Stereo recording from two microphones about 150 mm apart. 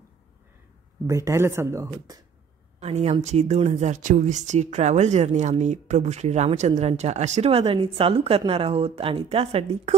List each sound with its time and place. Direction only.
1.0 s speech: 20° right (ahead or behind)
2.8 s a woman's voice: 45° right (ahead or behind)